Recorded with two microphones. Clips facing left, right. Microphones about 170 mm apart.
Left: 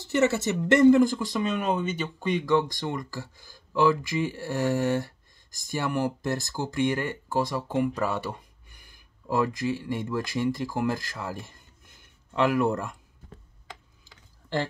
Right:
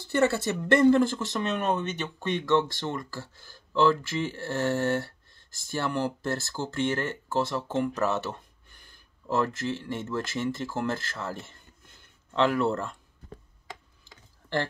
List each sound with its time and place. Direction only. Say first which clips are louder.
0.0 s speech: left 1 dB; 20° left (ahead or behind)